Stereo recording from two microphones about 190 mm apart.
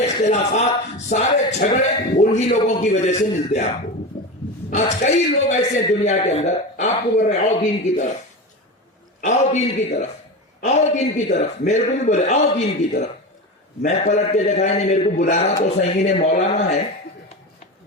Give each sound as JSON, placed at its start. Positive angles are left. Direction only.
{"t": 0.0, "sound": "a man's voice", "side_deg": 35}
{"t": 4.7, "sound": "a man's voice", "side_deg": 40}
{"t": 9.2, "sound": "a man's voice", "side_deg": 35}